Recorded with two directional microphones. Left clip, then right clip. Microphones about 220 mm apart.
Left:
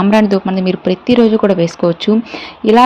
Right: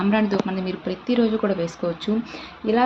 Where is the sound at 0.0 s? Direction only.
35° left (ahead or behind).